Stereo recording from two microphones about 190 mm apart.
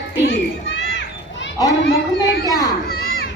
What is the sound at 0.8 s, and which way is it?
Crowd, 70° left (ahead or behind).